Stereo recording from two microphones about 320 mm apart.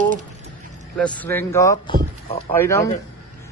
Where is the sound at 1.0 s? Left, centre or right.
Centre.